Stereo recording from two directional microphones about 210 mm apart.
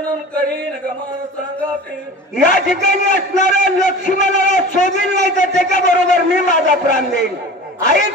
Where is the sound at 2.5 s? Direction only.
40° left (ahead or behind).